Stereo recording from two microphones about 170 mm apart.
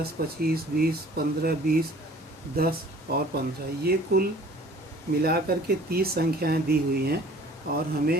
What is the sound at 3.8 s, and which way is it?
Speech, 65° right (ahead or behind).